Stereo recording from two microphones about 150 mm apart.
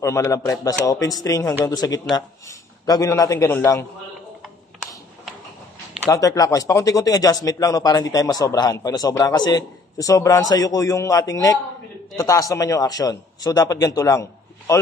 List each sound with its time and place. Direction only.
0.0 s speech: 20° left (ahead or behind)
6.0 s speech: 25° left (ahead or behind)